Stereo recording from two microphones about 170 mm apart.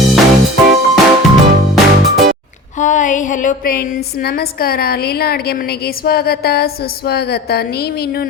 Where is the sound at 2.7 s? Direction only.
45° left (ahead or behind).